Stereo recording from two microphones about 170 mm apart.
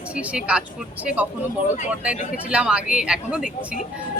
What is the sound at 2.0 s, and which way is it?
A woman's voice, 5° right (ahead or behind).